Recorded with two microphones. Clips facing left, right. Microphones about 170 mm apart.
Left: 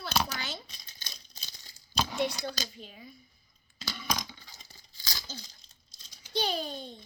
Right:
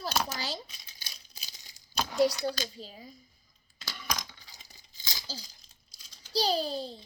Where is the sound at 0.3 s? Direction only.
35° right (ahead or behind).